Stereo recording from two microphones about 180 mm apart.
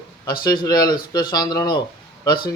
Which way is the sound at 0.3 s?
25° left (ahead or behind).